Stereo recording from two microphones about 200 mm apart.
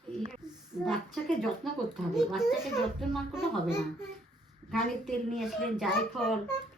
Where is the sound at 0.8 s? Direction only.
Centre (ahead or behind).